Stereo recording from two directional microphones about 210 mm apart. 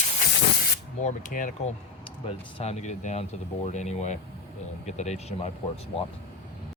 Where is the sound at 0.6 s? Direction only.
40° left (ahead or behind).